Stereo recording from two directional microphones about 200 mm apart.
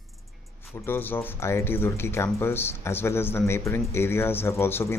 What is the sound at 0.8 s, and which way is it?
Speech, 10° left (ahead or behind).